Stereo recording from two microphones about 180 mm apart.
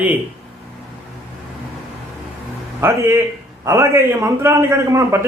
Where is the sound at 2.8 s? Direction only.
15° right (ahead or behind).